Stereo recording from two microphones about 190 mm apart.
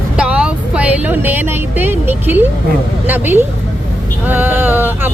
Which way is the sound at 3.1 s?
10° right (ahead or behind).